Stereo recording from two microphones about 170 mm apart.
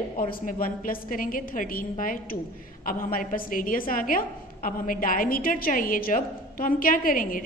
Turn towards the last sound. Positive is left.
turn(degrees=55)  # may be behind; listen again after turning